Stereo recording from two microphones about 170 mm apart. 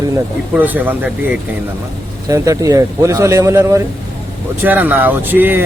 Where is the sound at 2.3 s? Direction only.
20° right (ahead or behind).